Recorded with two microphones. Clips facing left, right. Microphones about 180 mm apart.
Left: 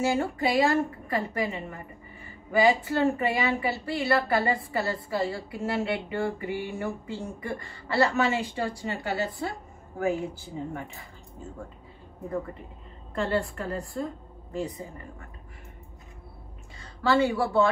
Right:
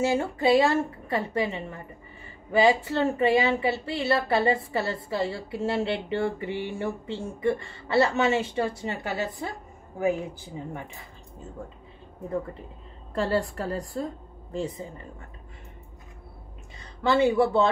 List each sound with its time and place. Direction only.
0.0 s speech: 25° right (ahead or behind)
13.1 s a woman's voice: 35° right (ahead or behind)
16.8 s speech: 20° right (ahead or behind)